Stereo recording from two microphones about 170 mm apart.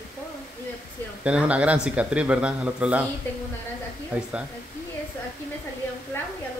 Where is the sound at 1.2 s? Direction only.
5° right (ahead or behind).